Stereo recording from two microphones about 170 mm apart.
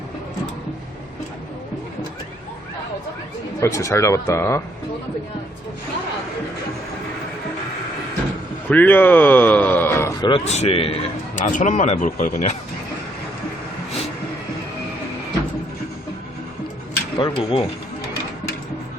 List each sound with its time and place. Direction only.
3.6 s speech: 15° left (ahead or behind)
8.7 s speech: 10° left (ahead or behind); by 11.4 s 35° left (ahead or behind)
11.5 s speech: 45° left (ahead or behind)
17.2 s speech: 30° left (ahead or behind)